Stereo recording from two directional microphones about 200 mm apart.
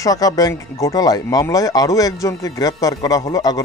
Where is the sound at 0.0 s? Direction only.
20° left (ahead or behind).